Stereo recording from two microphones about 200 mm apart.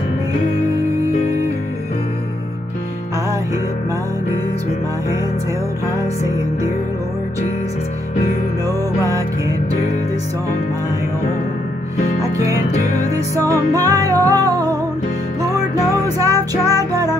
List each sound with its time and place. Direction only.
12.2 s music: 15° right (ahead or behind)
16.2 s music: 15° right (ahead or behind)